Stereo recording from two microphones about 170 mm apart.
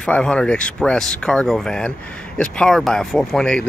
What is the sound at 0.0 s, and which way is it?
Speech, 5° left (ahead or behind).